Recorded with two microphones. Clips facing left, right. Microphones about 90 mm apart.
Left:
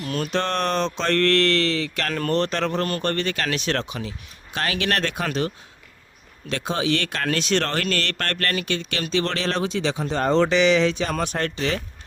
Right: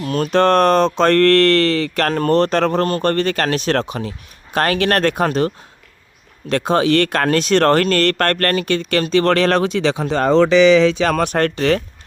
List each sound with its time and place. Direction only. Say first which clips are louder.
0.0 s mantra: right 9 dB; 40° right (ahead or behind)
6.5 s mantra: right 8 dB; 50° right (ahead or behind); by 10.2 s 80° right
11.0 s speech: right 8 dB; 65° right (ahead or behind)